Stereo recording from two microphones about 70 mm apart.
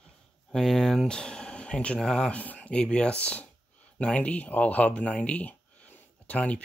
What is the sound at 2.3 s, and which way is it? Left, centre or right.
Speech, centre.